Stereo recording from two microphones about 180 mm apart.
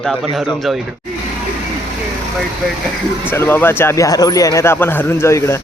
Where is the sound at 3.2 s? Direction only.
10° left (ahead or behind).